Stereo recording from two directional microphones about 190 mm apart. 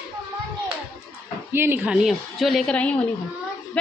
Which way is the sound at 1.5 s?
10° right (ahead or behind).